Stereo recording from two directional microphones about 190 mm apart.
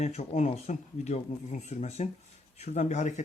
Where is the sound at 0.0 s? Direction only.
35° left (ahead or behind).